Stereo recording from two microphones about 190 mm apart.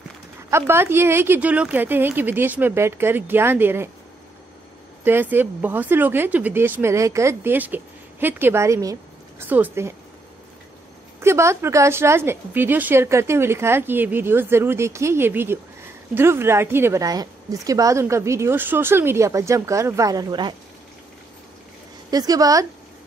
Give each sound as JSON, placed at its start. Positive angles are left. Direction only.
{"t": 0.5, "sound": "speech", "side_deg": -15}
{"t": 5.0, "sound": "speech", "side_deg": -10}
{"t": 11.1, "sound": "speech", "side_deg": -15}
{"t": 22.1, "sound": "a woman's voice", "side_deg": -20}